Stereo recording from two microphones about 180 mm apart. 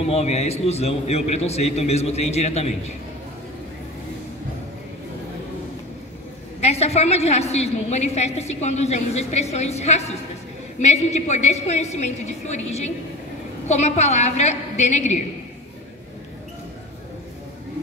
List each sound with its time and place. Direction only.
0.0 s a woman's voice: 35° left (ahead or behind)
6.6 s a woman's voice: 35° left (ahead or behind)